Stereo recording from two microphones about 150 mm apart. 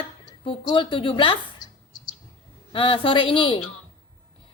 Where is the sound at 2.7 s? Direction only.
35° left (ahead or behind).